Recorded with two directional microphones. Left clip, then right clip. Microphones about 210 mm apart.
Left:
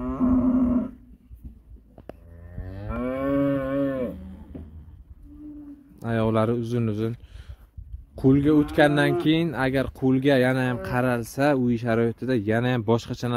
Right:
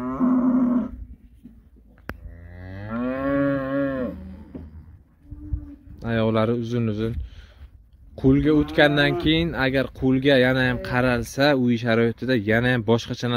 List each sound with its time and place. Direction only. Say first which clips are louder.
0.0 s wild animals: right 1 dB; 50° left (ahead or behind)
2.6 s moo: right 2 dB; 30° left (ahead or behind)
5.9 s speech: right 1 dB; 5° left (ahead or behind)
8.2 s speech: right 1 dB; 5° left (ahead or behind)